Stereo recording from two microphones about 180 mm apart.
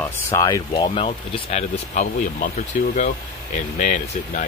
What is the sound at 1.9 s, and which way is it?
Speech, 50° left (ahead or behind).